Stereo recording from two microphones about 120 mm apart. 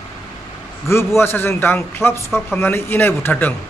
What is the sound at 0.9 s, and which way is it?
A man's voice, 20° left (ahead or behind).